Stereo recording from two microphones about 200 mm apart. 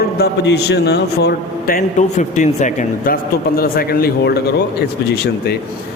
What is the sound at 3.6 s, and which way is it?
A man's voice, 50° left (ahead or behind).